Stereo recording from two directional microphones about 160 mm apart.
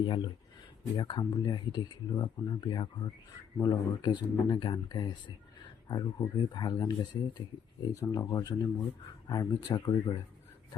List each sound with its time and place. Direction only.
0.0 s speech: 30° left (ahead or behind)